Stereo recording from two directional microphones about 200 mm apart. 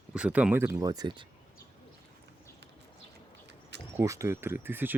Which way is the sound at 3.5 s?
60° right (ahead or behind).